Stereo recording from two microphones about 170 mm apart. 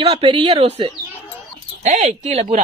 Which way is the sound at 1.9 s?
45° right (ahead or behind).